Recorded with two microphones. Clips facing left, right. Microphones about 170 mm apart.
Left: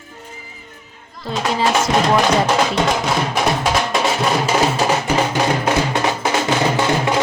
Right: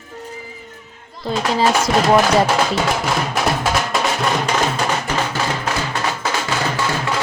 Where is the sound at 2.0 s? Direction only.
5° right (ahead or behind).